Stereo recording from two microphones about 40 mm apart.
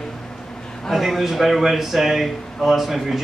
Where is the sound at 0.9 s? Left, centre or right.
Centre.